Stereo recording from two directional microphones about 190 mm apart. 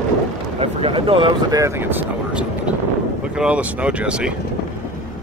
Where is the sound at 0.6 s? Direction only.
30° right (ahead or behind); by 4.3 s 5° right (ahead or behind).